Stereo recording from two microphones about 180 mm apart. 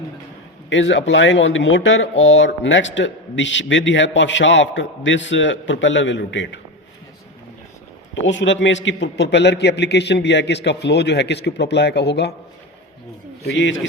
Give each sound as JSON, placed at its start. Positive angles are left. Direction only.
{"t": 0.7, "sound": "speech", "side_deg": 85}
{"t": 8.1, "sound": "a man's voice", "side_deg": 90}
{"t": 13.4, "sound": "a man's voice", "side_deg": 70}